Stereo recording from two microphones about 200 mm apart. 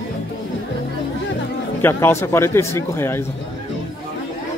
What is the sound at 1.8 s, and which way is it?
Speech, 10° left (ahead or behind).